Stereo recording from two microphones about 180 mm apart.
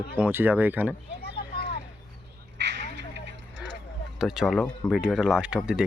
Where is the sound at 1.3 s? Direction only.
60° left (ahead or behind).